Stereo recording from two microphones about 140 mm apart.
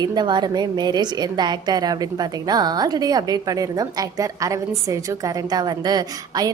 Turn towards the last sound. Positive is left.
turn(degrees=-30)  # may be behind; listen again after turning